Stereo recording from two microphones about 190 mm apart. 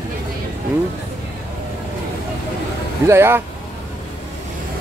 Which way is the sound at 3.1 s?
15° right (ahead or behind).